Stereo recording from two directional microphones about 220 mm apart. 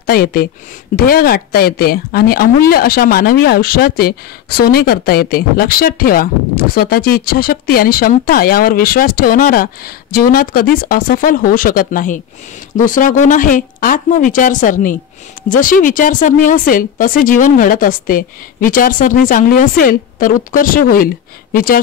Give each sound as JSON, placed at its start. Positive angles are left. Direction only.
{"t": 0.0, "sound": "speech", "side_deg": 40}